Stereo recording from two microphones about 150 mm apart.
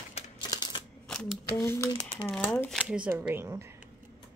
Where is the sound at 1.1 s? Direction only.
5° left (ahead or behind).